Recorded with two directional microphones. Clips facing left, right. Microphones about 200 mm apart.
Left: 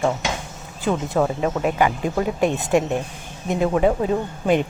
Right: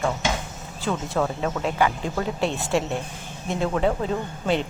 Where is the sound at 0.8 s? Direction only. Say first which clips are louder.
Left 4 dB; 20° left (ahead or behind).